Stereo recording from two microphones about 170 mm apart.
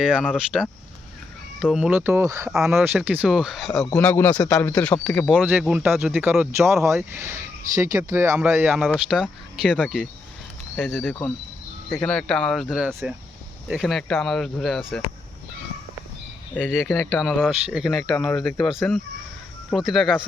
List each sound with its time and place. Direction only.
0.0 s speech: 5° right (ahead or behind)
3.9 s speech: 10° left (ahead or behind)
5.4 s speech: 10° right (ahead or behind)
8.8 s speech: centre (ahead or behind)
16.7 s speech: centre (ahead or behind)